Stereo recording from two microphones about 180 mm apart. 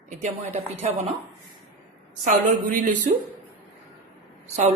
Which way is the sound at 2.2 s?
45° right (ahead or behind).